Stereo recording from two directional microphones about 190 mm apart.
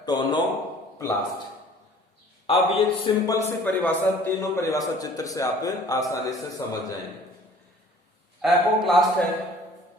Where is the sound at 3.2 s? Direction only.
10° left (ahead or behind).